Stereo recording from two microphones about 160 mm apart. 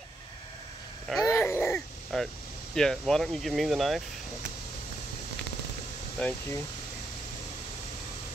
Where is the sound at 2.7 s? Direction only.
5° left (ahead or behind).